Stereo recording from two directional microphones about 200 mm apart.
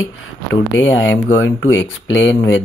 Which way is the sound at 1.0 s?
65° left (ahead or behind).